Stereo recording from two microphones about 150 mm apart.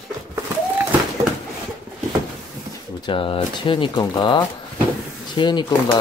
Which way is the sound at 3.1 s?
35° left (ahead or behind).